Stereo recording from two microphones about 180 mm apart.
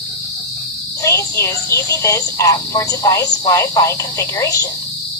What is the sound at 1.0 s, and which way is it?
Speech, 15° left (ahead or behind).